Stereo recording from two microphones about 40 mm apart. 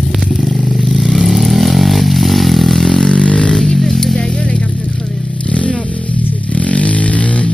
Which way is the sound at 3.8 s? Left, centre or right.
Centre.